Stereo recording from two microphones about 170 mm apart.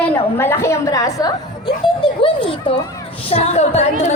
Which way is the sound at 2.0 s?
30° left (ahead or behind).